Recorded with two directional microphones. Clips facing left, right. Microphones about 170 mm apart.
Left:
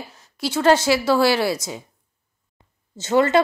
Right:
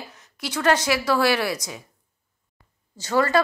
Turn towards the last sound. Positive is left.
turn(degrees=25)  # may be behind; listen again after turning